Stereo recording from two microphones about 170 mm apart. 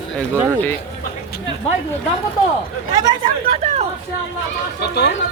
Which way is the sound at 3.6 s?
40° right (ahead or behind).